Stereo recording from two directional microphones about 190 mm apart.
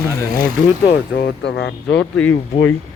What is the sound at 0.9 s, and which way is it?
Speech, 60° left (ahead or behind).